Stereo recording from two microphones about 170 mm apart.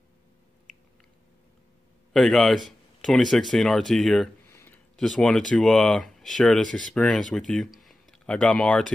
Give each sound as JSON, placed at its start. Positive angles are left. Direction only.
{"t": 2.1, "sound": "speech", "side_deg": 0}
{"t": 4.5, "sound": "a sound", "side_deg": 15}
{"t": 4.9, "sound": "speech", "side_deg": 5}